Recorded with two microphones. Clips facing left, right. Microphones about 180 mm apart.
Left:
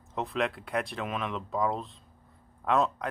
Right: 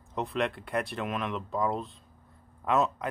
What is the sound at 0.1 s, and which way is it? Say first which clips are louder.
Speech: even; centre (ahead or behind).